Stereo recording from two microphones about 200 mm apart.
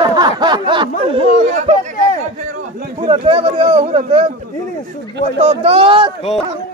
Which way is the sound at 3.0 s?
30° right (ahead or behind).